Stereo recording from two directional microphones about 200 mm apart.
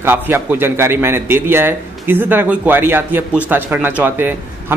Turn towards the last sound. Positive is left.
turn(degrees=-10)  # may be behind; listen again after turning